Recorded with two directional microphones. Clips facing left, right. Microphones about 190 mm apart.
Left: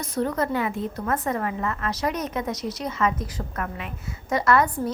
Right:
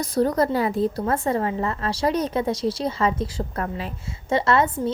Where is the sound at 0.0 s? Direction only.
35° right (ahead or behind).